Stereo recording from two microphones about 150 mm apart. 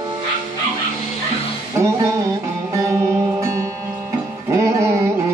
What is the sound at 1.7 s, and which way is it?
Music, 20° right (ahead or behind).